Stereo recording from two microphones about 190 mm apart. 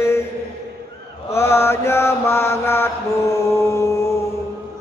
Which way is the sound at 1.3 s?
15° left (ahead or behind).